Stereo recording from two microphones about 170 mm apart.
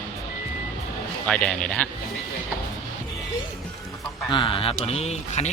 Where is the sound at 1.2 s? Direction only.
5° left (ahead or behind).